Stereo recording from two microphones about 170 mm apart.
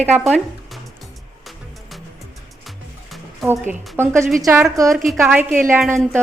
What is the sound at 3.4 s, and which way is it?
A woman's voice, 15° right (ahead or behind).